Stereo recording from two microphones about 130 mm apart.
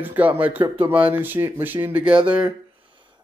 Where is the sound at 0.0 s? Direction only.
15° right (ahead or behind).